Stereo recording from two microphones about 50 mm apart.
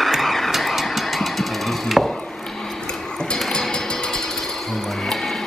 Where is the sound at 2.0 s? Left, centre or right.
Centre.